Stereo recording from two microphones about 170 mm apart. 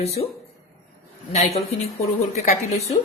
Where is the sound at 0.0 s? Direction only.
40° left (ahead or behind).